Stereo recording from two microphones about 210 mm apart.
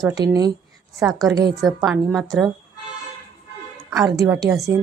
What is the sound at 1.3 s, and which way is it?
Speech, 20° right (ahead or behind).